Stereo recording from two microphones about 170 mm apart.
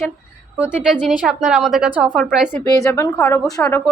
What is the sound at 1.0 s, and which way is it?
A woman's voice, 5° right (ahead or behind).